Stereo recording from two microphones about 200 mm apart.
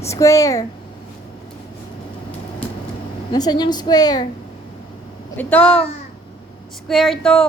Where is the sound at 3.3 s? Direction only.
20° left (ahead or behind).